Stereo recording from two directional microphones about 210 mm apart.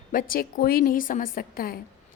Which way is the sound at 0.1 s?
40° left (ahead or behind).